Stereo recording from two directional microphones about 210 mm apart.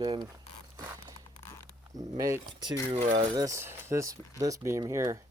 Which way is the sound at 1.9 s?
15° right (ahead or behind).